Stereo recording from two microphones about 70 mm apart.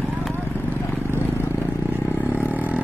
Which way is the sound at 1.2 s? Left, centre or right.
Left.